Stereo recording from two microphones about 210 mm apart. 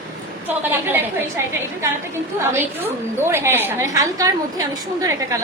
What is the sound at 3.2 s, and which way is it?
A woman's voice, 10° right (ahead or behind).